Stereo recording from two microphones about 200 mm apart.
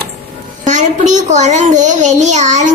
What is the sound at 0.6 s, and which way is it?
A child's voice, 40° right (ahead or behind).